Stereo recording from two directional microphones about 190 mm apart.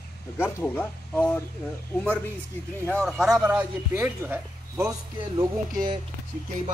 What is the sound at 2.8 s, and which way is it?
Speech, 5° left (ahead or behind).